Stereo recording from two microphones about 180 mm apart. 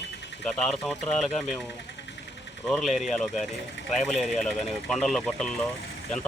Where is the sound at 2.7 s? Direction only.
Centre (ahead or behind).